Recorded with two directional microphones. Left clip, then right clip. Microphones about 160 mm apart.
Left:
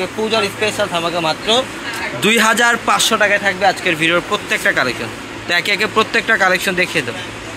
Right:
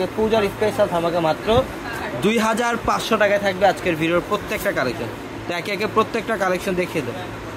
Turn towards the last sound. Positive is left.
turn(degrees=0)  # may be behind; listen again after turning